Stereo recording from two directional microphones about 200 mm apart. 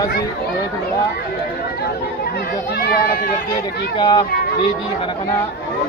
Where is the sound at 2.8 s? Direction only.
50° left (ahead or behind).